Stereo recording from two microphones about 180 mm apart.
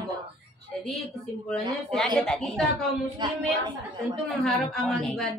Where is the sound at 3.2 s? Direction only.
25° right (ahead or behind).